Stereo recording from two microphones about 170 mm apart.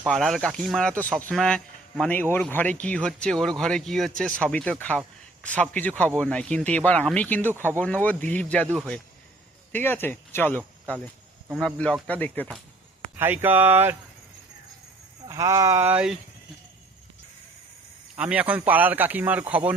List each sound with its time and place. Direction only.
0.0 s a man's voice: centre (ahead or behind)
9.7 s speech: 10° left (ahead or behind)
13.1 s speech: 10° right (ahead or behind)
15.3 s speech: 15° right (ahead or behind)
18.2 s speech: 10° right (ahead or behind)